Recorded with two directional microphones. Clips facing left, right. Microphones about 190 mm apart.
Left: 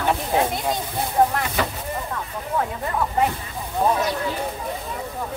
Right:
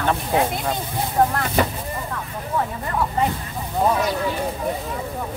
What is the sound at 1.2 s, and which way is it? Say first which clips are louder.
Speech: even; 5° left (ahead or behind).